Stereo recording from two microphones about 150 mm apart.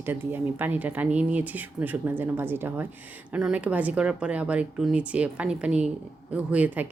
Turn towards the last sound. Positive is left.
turn(degrees=-10)  # may be behind; listen again after turning